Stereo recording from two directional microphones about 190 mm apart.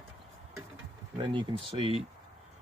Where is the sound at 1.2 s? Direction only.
25° right (ahead or behind).